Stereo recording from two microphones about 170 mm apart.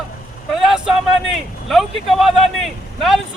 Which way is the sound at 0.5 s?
Centre (ahead or behind).